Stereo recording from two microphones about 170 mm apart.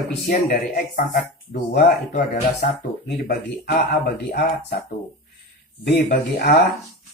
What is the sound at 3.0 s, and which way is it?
Speech, 75° left (ahead or behind).